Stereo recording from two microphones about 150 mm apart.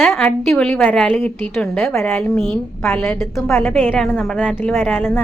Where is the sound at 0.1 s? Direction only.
15° left (ahead or behind).